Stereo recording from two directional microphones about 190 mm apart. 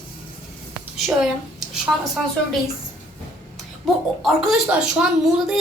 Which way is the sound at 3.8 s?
Centre (ahead or behind).